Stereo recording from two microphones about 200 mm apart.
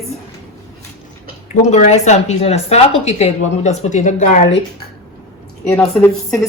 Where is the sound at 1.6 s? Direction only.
35° left (ahead or behind).